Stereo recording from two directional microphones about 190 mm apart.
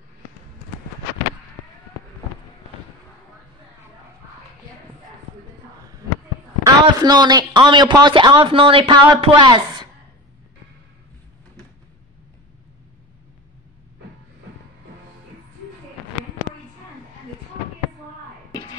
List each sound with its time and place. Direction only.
6.6 s a man's voice: 20° right (ahead or behind)